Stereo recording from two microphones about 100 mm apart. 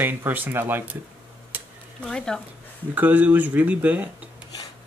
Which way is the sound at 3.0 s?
15° right (ahead or behind).